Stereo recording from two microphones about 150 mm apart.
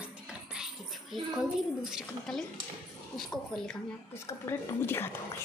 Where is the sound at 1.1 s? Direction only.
5° right (ahead or behind).